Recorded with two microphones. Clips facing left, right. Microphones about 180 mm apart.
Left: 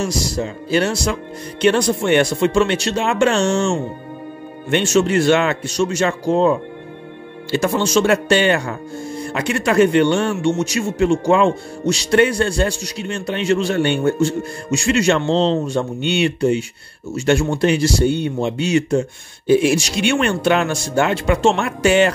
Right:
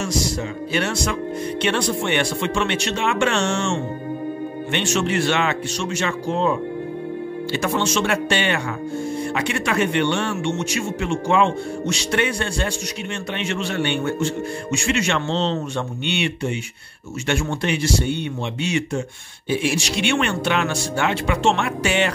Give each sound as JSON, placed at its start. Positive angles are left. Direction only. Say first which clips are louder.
{"t": 0.0, "sound": "speech", "louder": "left 2 dB", "side_deg": 35}
{"t": 7.6, "sound": "speech", "louder": "left 6 dB", "side_deg": 35}